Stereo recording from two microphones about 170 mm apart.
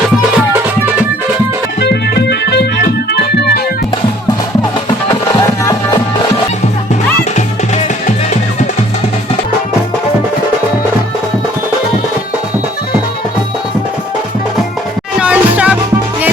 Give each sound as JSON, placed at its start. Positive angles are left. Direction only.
{"t": 1.8, "sound": "music", "side_deg": 80}
{"t": 15.2, "sound": "music", "side_deg": -5}